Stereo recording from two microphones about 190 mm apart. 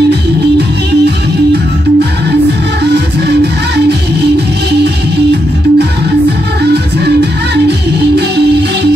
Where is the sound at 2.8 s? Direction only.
60° right (ahead or behind).